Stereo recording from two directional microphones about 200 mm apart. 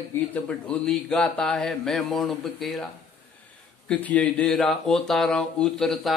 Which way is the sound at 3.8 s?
5° left (ahead or behind).